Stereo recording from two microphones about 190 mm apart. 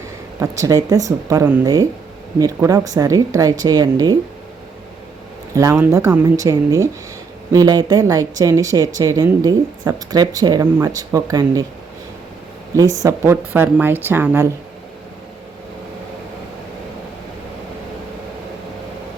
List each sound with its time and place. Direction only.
0.3 s speech: 15° right (ahead or behind)
5.5 s speech: 15° right (ahead or behind)
12.7 s speech: 15° right (ahead or behind)